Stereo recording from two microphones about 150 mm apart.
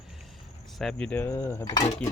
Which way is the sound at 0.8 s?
5° left (ahead or behind).